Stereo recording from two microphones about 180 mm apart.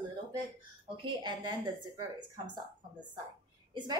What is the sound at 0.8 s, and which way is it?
A woman's voice, 25° right (ahead or behind).